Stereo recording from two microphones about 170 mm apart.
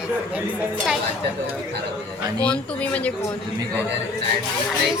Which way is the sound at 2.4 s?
10° left (ahead or behind).